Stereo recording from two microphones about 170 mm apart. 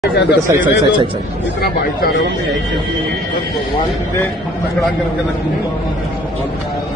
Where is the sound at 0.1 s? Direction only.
90° left.